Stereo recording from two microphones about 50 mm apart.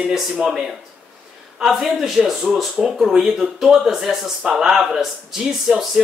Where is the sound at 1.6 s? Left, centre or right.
Centre.